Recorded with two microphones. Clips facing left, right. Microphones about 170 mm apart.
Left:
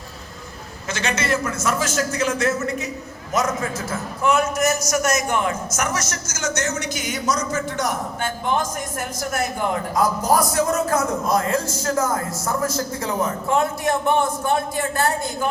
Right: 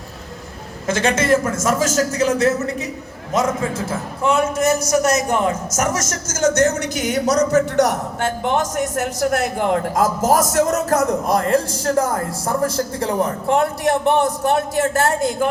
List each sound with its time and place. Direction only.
0.9 s a man's voice: 50° right (ahead or behind); by 10.2 s 75° right (ahead or behind)
10.2 s a man's voice: 45° right (ahead or behind)
11.3 s a man's voice: 60° right (ahead or behind)
11.8 s speech: 30° right (ahead or behind)
13.2 s a man's voice: 65° right (ahead or behind); by 15.3 s 85° right